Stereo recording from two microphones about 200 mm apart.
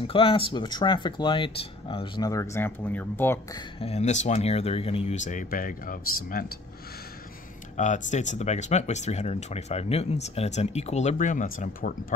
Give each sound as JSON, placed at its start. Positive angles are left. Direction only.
{"t": 0.0, "sound": "speech", "side_deg": 25}
{"t": 3.5, "sound": "speech", "side_deg": 30}
{"t": 7.7, "sound": "speech", "side_deg": 35}